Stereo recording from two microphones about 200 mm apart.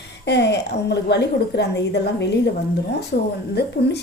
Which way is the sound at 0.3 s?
60° left (ahead or behind).